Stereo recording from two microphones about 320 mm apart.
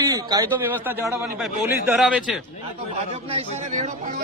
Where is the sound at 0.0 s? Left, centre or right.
Centre.